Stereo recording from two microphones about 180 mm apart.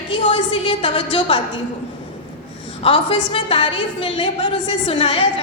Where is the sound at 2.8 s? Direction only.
30° left (ahead or behind).